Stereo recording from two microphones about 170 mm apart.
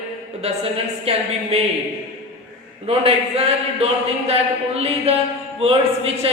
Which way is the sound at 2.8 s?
35° right (ahead or behind).